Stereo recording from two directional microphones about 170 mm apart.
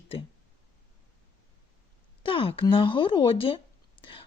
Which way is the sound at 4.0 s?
30° left (ahead or behind).